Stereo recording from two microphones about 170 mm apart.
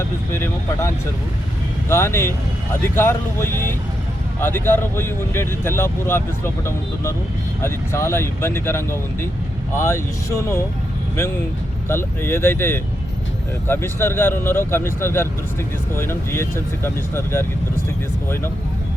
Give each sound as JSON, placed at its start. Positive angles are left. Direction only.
{"t": 0.3, "sound": "speech", "side_deg": 15}
{"t": 11.9, "sound": "speech", "side_deg": 15}